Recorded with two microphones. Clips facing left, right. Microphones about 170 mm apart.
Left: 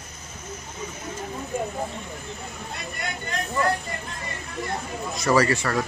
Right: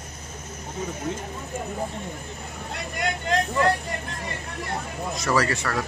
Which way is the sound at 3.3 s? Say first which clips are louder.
Right 8 dB; 90° right.